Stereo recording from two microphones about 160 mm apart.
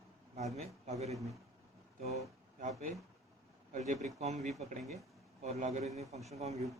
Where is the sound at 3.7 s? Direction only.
45° right (ahead or behind).